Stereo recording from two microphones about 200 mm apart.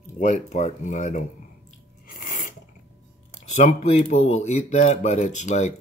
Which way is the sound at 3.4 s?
35° left (ahead or behind).